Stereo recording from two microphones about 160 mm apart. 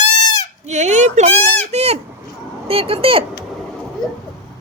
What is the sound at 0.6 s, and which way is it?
Speech, 45° right (ahead or behind).